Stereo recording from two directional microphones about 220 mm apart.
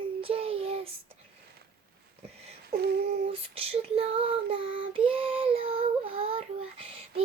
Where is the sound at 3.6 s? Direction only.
25° right (ahead or behind).